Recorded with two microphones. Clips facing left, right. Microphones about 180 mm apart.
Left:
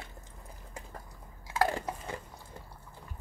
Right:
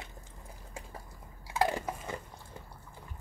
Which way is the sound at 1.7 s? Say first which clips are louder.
Even; 15° right (ahead or behind).